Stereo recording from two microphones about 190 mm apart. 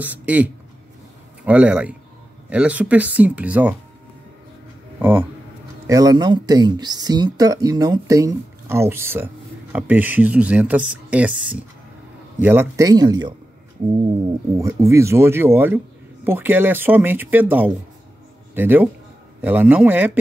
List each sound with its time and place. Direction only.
0.0 s speech: 10° right (ahead or behind)
4.9 s speech: 10° right (ahead or behind)
14.6 s speech: 15° right (ahead or behind)